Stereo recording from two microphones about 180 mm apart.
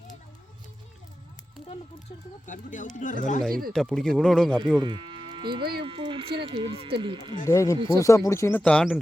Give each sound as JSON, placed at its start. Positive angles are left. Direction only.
{"t": 2.5, "sound": "speech", "side_deg": 45}
{"t": 3.7, "sound": "speech", "side_deg": 0}
{"t": 4.8, "sound": "speech", "side_deg": -25}
{"t": 7.4, "sound": "speech", "side_deg": 15}